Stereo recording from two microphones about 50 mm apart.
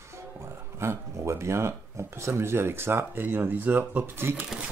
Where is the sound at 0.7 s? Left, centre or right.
Right.